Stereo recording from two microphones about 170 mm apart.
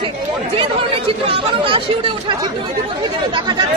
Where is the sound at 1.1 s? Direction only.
35° right (ahead or behind).